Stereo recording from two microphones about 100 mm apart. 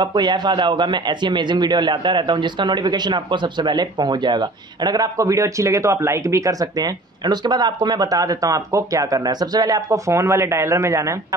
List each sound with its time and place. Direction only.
0.0 s speech: 45° right (ahead or behind); by 11.1 s 30° right (ahead or behind)